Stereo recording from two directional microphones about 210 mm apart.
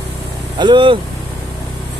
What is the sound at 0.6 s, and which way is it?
Speech, 20° right (ahead or behind).